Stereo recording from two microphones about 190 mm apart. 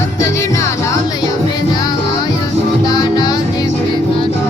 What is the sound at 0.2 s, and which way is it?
Music, 15° left (ahead or behind).